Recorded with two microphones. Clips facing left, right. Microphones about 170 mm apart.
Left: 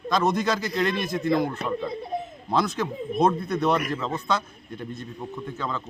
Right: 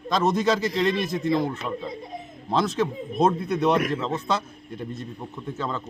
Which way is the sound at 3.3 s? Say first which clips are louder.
Right 1 dB; 5° right (ahead or behind).